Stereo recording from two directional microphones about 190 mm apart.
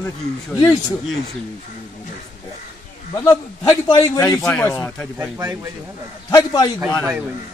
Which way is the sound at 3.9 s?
20° left (ahead or behind).